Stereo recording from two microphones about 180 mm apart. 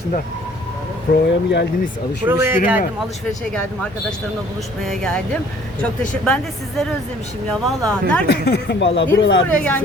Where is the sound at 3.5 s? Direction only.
5° left (ahead or behind).